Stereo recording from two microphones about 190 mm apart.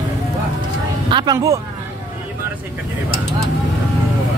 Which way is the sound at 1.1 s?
20° right (ahead or behind).